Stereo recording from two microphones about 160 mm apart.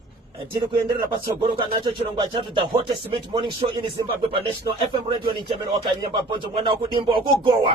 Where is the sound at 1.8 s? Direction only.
30° right (ahead or behind).